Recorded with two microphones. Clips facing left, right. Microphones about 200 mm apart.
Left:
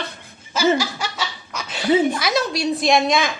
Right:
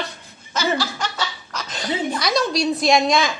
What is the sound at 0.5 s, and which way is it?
Speech, 10° left (ahead or behind).